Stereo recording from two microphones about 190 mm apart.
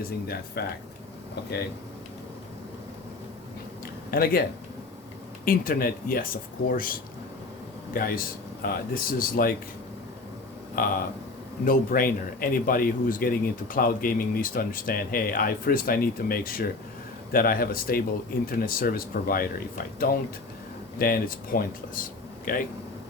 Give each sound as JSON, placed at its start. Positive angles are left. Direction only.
{"t": 0.3, "sound": "speech", "side_deg": 55}
{"t": 4.1, "sound": "speech", "side_deg": 50}
{"t": 5.5, "sound": "speech", "side_deg": 50}
{"t": 7.9, "sound": "speech", "side_deg": 50}
{"t": 10.8, "sound": "speech", "side_deg": 50}